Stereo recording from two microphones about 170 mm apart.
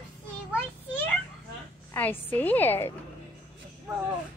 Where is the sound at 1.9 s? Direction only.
10° left (ahead or behind).